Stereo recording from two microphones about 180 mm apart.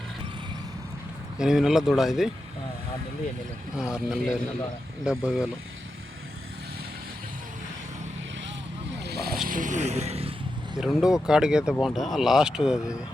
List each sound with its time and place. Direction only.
1.4 s speech: 5° right (ahead or behind)
3.8 s speech: 5° right (ahead or behind)
9.0 s vehicle: 65° right (ahead or behind)
9.5 s vehicle: 45° right (ahead or behind)
10.8 s speech: 5° right (ahead or behind)